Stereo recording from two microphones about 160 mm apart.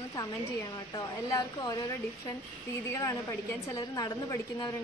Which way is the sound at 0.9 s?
20° left (ahead or behind).